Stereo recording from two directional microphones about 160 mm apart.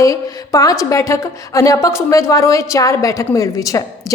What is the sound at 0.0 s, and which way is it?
A woman's voice, 20° left (ahead or behind).